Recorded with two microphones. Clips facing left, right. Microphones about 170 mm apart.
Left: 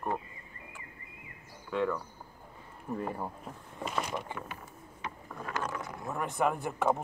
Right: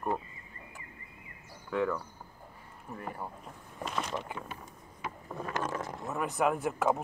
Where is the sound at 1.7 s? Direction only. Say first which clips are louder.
Even; 5° right (ahead or behind).